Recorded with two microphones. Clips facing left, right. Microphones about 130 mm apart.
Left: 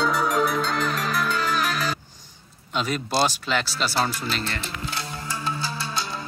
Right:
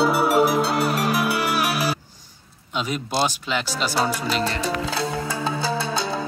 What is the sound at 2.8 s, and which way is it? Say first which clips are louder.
Speech: even; 15° right (ahead or behind).